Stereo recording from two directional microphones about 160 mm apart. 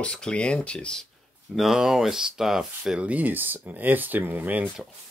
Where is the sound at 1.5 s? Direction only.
Centre (ahead or behind).